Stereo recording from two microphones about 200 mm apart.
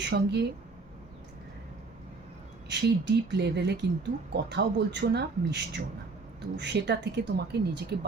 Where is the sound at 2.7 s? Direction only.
60° right (ahead or behind).